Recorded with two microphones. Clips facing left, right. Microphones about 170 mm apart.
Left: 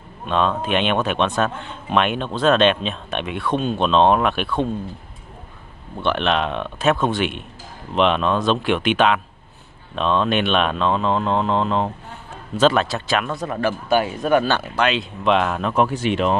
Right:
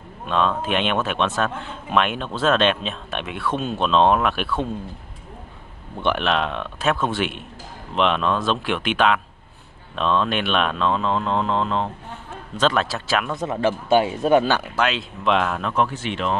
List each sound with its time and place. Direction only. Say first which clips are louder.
0.3 s a man's voice: left 2 dB; centre (ahead or behind)
5.9 s speech: left 1 dB; 15° right (ahead or behind)
6.2 s a man's voice: left 2 dB; centre (ahead or behind)
13.4 s speech: right 1 dB; 20° right (ahead or behind)
14.5 s a man's voice: left 2 dB; 5° right (ahead or behind); by 16.3 s 15° left (ahead or behind)